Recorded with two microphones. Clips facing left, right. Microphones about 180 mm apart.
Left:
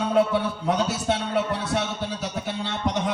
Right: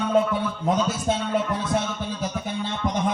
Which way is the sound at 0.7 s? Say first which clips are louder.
Right 1 dB; 70° left (ahead or behind).